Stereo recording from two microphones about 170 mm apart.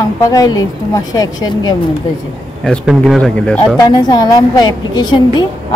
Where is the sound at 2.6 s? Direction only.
Centre (ahead or behind).